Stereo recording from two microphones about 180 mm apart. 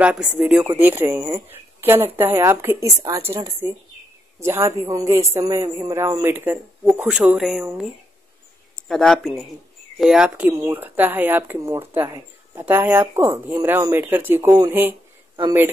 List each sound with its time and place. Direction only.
0.0 s speech: 5° right (ahead or behind)
8.8 s speech: centre (ahead or behind)